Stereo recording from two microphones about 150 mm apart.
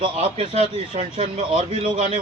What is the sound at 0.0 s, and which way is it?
A man's voice, 35° right (ahead or behind).